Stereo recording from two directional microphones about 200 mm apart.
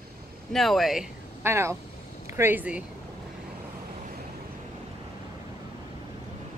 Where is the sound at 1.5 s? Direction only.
15° right (ahead or behind).